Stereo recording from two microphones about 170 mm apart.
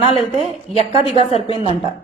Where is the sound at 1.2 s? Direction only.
35° left (ahead or behind).